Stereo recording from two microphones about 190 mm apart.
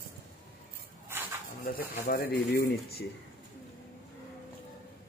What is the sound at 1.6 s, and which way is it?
Speech, 50° left (ahead or behind).